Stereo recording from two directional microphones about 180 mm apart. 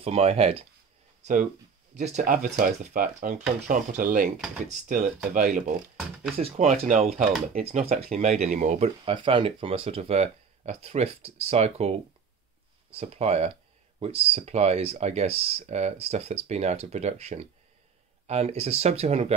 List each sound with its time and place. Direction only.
0.0 s speech: 35° right (ahead or behind)
1.2 s speech: 45° right (ahead or behind)
6.3 s speech: 35° right (ahead or behind)